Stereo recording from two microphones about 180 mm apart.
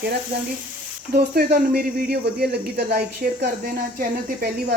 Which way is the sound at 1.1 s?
60° right (ahead or behind).